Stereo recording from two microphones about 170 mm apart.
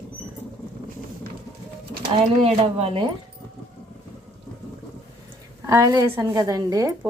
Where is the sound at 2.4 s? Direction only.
35° right (ahead or behind).